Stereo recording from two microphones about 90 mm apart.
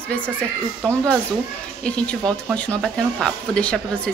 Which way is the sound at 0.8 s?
10° left (ahead or behind).